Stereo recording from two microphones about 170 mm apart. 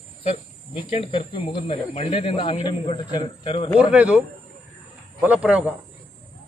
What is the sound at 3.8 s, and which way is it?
A man's voice, 5° right (ahead or behind).